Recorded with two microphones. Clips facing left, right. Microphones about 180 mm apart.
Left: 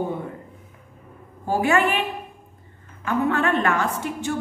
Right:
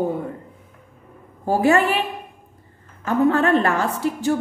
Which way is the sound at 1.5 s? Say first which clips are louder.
Right 3 dB; 40° right (ahead or behind).